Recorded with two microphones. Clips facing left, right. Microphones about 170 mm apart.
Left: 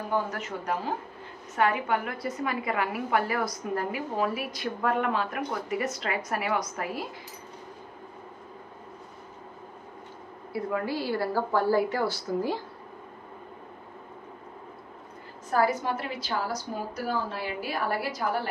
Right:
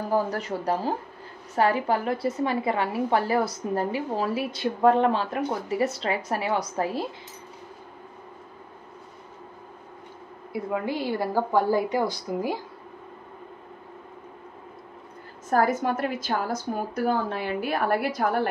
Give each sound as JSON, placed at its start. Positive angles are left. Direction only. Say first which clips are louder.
{"t": 0.1, "sound": "a woman's voice", "louder": "right 5 dB", "side_deg": -35}
{"t": 10.5, "sound": "a woman's voice", "louder": "right 1 dB", "side_deg": -20}
{"t": 15.5, "sound": "a woman's voice", "louder": "right 3 dB", "side_deg": -50}